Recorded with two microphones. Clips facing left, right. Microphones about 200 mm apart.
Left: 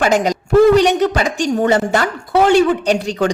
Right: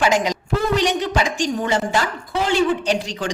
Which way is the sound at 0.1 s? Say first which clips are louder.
Left 7 dB; 50° left (ahead or behind).